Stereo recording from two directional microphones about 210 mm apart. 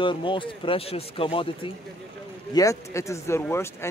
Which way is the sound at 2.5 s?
15° left (ahead or behind).